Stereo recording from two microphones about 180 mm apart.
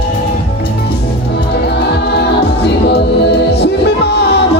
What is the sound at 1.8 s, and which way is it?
Choir, 70° left (ahead or behind).